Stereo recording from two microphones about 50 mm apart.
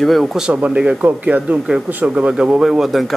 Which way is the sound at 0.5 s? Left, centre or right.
Right.